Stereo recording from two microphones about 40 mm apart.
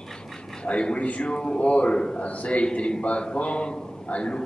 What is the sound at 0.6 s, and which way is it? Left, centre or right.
A man's voice, left.